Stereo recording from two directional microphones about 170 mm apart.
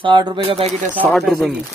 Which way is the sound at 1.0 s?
5° left (ahead or behind).